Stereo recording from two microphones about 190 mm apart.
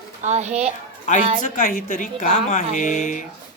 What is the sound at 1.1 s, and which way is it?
A man's voice, 40° left (ahead or behind).